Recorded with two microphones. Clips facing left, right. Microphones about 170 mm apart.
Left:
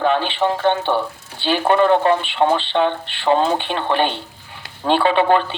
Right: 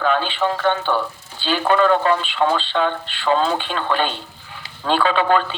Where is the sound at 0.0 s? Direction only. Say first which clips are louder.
Left 2 dB; 25° left (ahead or behind).